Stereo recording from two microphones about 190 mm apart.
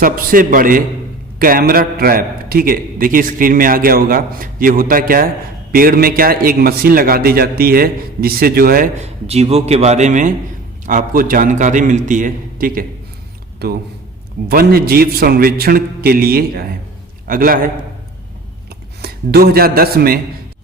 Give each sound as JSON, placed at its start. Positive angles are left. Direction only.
{"t": 0.0, "sound": "a man's voice", "side_deg": -45}
{"t": 9.0, "sound": "a man's voice", "side_deg": -35}
{"t": 19.0, "sound": "speech", "side_deg": -55}